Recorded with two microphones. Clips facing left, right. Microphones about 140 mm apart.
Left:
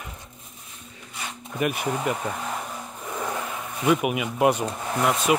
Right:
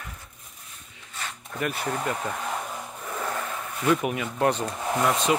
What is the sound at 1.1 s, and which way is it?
Speech, 15° left (ahead or behind).